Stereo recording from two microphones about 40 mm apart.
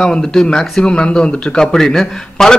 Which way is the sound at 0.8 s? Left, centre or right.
Left.